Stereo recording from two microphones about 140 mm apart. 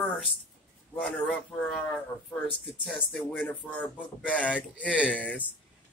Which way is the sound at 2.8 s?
Centre (ahead or behind).